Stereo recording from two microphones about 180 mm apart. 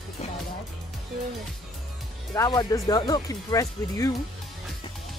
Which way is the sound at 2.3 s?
20° left (ahead or behind).